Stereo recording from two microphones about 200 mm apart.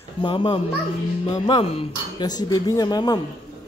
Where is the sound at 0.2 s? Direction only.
25° left (ahead or behind).